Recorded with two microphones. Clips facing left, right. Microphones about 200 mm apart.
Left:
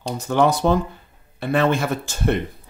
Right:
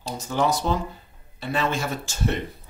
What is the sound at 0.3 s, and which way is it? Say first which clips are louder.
Speech: left 6 dB; 60° left (ahead or behind).